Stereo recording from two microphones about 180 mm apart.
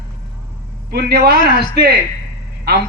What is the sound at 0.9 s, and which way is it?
A man's voice, 65° right (ahead or behind).